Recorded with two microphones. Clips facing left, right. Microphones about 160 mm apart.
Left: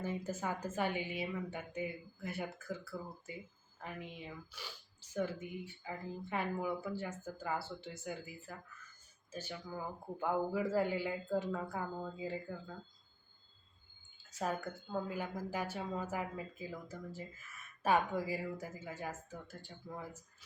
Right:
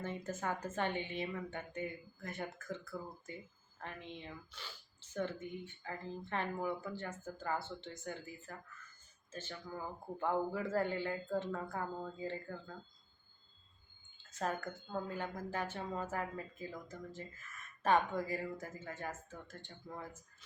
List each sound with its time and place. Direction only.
0.0 s speech: 10° left (ahead or behind)
14.2 s speech: 10° left (ahead or behind)